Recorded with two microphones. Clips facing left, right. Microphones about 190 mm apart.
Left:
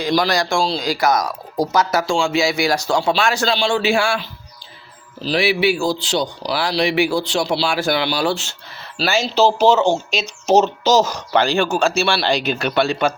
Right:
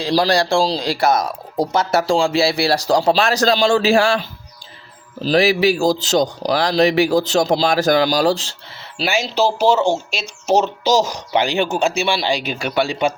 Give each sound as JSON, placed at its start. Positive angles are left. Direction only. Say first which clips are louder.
{"t": 0.0, "sound": "speech", "louder": "right 2 dB", "side_deg": -35}
{"t": 9.0, "sound": "speech", "louder": "left 2 dB", "side_deg": -15}